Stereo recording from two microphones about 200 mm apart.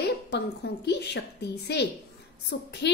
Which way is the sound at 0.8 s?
55° left (ahead or behind).